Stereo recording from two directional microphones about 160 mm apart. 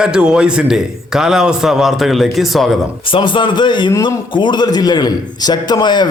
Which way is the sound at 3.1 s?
30° left (ahead or behind).